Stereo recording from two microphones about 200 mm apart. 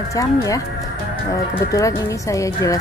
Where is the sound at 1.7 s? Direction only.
15° left (ahead or behind).